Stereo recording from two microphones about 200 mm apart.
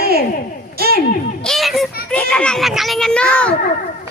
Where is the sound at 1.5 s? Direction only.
Centre (ahead or behind).